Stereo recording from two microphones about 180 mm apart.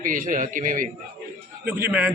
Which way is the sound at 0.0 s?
50° right (ahead or behind).